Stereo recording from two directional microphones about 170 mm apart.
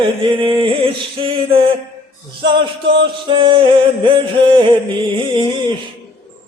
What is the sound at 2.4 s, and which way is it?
Music, 30° right (ahead or behind).